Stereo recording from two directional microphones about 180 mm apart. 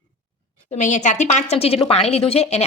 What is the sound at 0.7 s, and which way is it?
Speech, 40° left (ahead or behind).